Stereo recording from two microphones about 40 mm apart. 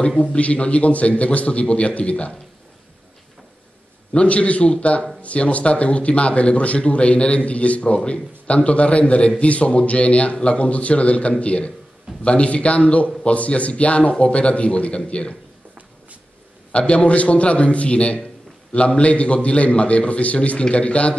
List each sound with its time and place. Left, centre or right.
0.2 s speech: left
4.1 s speech: left
16.7 s speech: left